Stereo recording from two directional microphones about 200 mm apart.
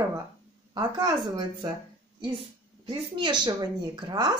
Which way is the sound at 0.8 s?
20° right (ahead or behind).